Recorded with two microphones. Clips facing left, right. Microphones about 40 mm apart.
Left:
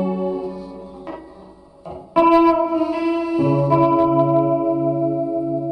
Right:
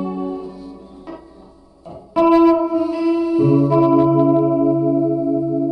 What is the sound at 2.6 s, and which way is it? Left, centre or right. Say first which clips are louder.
Music: right 1 dB; centre.